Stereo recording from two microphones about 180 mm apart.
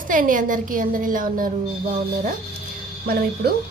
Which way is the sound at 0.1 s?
50° right (ahead or behind).